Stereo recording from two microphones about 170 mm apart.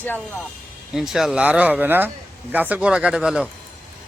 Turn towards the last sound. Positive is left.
turn(degrees=-5)  # may be behind; listen again after turning